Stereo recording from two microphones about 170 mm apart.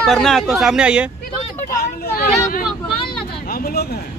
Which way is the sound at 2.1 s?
60° left (ahead or behind).